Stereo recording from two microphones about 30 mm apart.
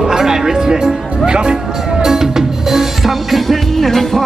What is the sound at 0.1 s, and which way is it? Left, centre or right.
Speech, centre.